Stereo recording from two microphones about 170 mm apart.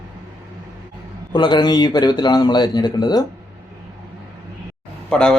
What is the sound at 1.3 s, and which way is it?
Speech, 25° left (ahead or behind).